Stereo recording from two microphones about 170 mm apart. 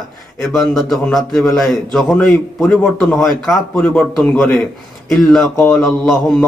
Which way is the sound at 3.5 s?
15° left (ahead or behind).